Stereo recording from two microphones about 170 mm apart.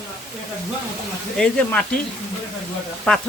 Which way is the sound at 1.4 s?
5° left (ahead or behind).